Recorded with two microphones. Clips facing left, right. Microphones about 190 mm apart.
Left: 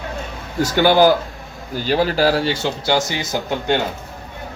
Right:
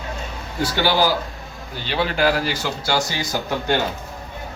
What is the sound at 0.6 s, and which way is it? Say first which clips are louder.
Speech: left 6 dB; 50° left (ahead or behind).